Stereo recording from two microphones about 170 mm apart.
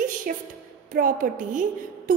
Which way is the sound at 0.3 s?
55° right (ahead or behind).